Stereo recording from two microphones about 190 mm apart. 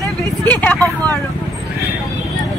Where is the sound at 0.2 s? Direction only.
10° left (ahead or behind).